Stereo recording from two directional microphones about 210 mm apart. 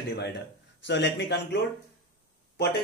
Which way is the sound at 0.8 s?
55° left (ahead or behind).